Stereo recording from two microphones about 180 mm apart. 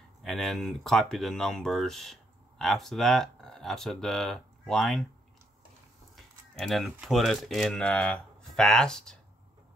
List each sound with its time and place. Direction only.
0.2 s speech: centre (ahead or behind)
6.1 s speech: centre (ahead or behind)